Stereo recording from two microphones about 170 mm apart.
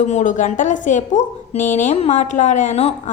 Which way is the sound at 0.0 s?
45° left (ahead or behind).